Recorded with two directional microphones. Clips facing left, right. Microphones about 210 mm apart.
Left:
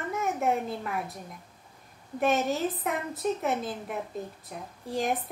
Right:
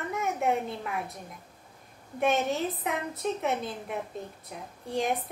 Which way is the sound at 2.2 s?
Centre (ahead or behind).